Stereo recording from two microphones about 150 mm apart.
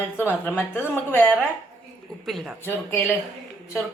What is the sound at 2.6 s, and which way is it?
Speech, 15° left (ahead or behind).